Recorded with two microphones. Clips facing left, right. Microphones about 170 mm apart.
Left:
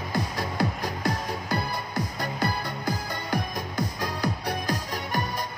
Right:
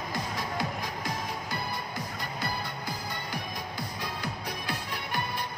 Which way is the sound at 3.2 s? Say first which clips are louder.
Left 7 dB; 45° left (ahead or behind).